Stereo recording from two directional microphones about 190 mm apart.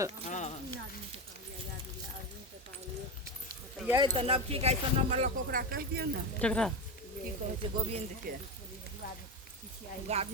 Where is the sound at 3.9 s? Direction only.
20° right (ahead or behind).